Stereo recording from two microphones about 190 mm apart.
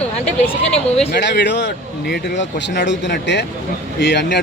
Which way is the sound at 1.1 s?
65° left (ahead or behind).